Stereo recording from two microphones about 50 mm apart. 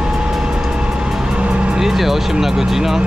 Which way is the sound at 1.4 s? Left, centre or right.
Right.